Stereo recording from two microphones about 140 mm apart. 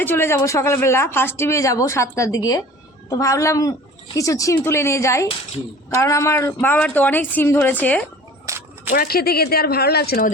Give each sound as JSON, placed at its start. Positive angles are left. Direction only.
{"t": 0.0, "sound": "speech", "side_deg": 15}
{"t": 8.4, "sound": "a sound", "side_deg": -20}
{"t": 9.0, "sound": "speech", "side_deg": 90}